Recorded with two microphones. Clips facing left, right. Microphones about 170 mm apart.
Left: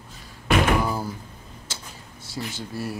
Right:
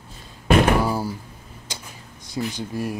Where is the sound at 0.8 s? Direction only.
10° right (ahead or behind).